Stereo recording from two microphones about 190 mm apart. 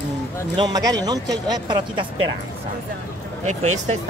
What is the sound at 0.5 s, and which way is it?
Speech, 20° right (ahead or behind).